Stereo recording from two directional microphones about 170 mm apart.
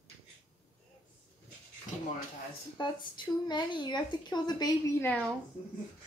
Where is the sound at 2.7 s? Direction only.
25° left (ahead or behind).